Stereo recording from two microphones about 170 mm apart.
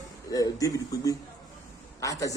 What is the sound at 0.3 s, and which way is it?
A man's voice, 20° left (ahead or behind).